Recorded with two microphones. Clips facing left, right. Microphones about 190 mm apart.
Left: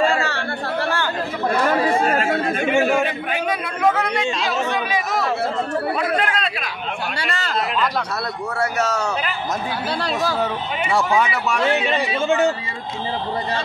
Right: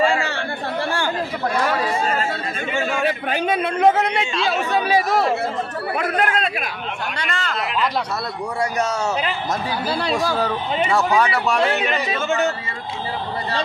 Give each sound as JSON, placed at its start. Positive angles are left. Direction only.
{"t": 0.0, "sound": "chatter", "side_deg": -15}
{"t": 1.7, "sound": "chatter", "side_deg": 55}
{"t": 3.3, "sound": "a man's voice", "side_deg": -30}
{"t": 4.7, "sound": "chatter", "side_deg": -35}
{"t": 5.9, "sound": "speech", "side_deg": -45}
{"t": 7.2, "sound": "speech", "side_deg": 5}
{"t": 8.5, "sound": "speech", "side_deg": -15}
{"t": 9.8, "sound": "speech", "side_deg": 0}
{"t": 12.1, "sound": "speech", "side_deg": 15}